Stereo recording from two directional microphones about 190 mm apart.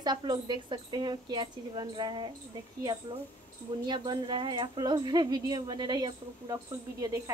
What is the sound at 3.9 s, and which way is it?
A woman's voice, 25° right (ahead or behind).